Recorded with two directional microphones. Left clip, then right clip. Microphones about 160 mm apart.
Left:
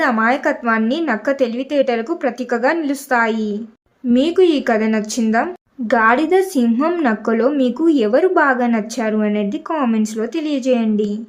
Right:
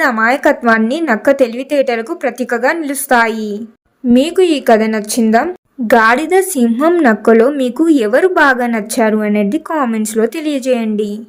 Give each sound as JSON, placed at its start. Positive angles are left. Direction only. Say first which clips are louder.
{"t": 0.0, "sound": "a woman's voice", "louder": "right 4 dB", "side_deg": -35}
{"t": 5.2, "sound": "a woman's voice", "louder": "right 6 dB", "side_deg": -25}
{"t": 5.9, "sound": "a woman's voice", "louder": "right 4 dB", "side_deg": -35}